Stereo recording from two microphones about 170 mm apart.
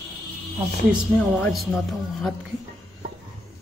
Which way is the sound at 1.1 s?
Centre (ahead or behind).